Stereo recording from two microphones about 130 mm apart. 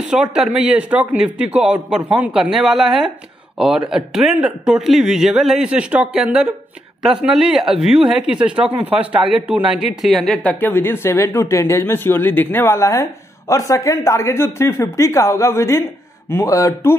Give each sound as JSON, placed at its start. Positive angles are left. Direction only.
{"t": 0.0, "sound": "speech", "side_deg": -5}